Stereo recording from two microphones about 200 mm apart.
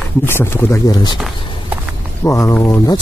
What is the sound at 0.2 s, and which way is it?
Speech, 10° left (ahead or behind).